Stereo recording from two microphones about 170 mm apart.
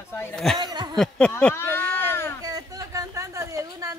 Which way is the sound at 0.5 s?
25° right (ahead or behind).